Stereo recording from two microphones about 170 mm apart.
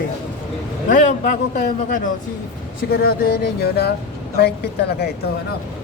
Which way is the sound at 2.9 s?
65° left (ahead or behind).